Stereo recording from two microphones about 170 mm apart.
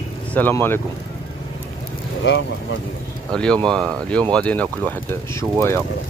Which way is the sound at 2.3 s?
90° left.